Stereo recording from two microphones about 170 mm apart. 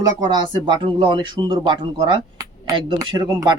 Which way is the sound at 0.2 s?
25° right (ahead or behind).